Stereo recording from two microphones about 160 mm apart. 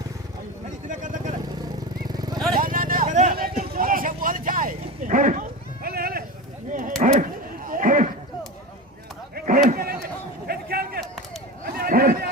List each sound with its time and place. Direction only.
0.9 s vehicle: 50° right (ahead or behind)
2.0 s vehicle: 25° right (ahead or behind)
2.6 s hubbub: 60° right (ahead or behind)
3.6 s vehicle: 60° right (ahead or behind)
6.7 s a sound: 55° right (ahead or behind)
7.0 s dog: 55° right (ahead or behind)
9.6 s a sound: 70° right (ahead or behind)